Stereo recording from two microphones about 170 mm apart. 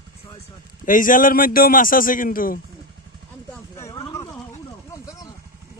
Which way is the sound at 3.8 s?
20° left (ahead or behind).